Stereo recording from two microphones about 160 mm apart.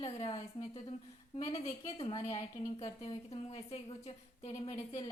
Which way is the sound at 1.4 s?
40° left (ahead or behind).